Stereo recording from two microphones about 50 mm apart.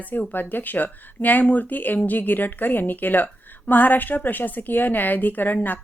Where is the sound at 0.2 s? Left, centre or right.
Left.